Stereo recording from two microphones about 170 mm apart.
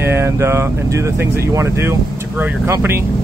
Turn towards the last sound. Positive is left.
turn(degrees=-15)  # may be behind; listen again after turning